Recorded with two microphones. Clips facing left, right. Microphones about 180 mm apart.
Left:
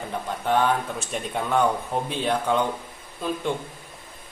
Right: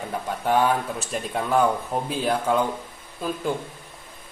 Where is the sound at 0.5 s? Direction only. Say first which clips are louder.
Right 1 dB; 10° right (ahead or behind).